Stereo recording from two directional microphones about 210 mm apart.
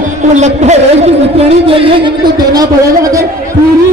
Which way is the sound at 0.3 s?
35° right (ahead or behind).